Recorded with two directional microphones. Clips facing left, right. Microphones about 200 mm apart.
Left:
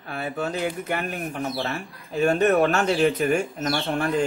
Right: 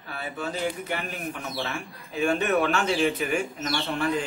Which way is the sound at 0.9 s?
50° left (ahead or behind).